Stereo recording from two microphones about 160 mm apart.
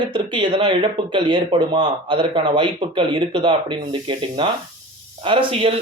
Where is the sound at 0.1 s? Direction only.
30° right (ahead or behind).